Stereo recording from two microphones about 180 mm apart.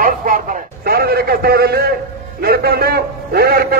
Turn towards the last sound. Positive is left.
turn(degrees=-60)  # may be behind; listen again after turning